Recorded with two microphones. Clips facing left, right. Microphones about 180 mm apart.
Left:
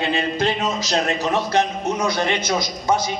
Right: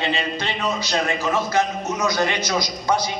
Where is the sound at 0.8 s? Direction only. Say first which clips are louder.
Left 3 dB; 35° left (ahead or behind).